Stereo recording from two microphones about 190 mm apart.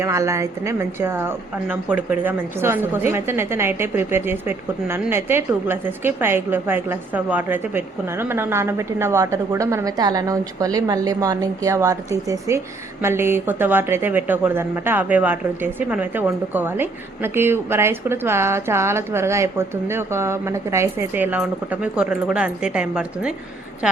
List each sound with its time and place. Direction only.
0.0 s speech: 15° right (ahead or behind)